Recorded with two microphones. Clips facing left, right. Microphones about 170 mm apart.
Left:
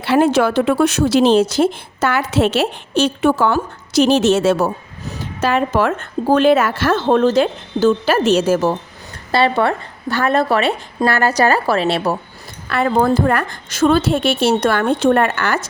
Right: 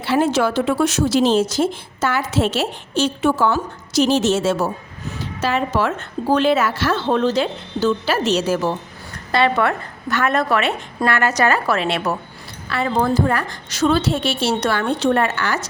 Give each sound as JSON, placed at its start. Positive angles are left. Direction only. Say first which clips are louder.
{"t": 0.0, "sound": "speech", "louder": "left 4 dB", "side_deg": 60}
{"t": 9.3, "sound": "a woman's voice", "louder": "left 2 dB", "side_deg": 30}
{"t": 12.6, "sound": "speech", "louder": "left 4 dB", "side_deg": 55}